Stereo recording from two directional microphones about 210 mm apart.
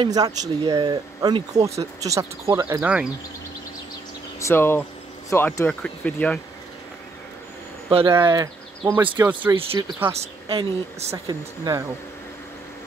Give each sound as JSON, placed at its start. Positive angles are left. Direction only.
{"t": 0.0, "sound": "speech", "side_deg": -20}
{"t": 4.4, "sound": "speech", "side_deg": 10}
{"t": 7.9, "sound": "speech", "side_deg": -25}
{"t": 10.1, "sound": "speech", "side_deg": -25}